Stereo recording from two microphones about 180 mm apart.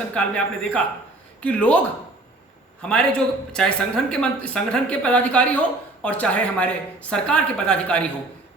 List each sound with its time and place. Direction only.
0.1 s a woman's voice: 5° left (ahead or behind)
2.8 s a woman's voice: 5° left (ahead or behind)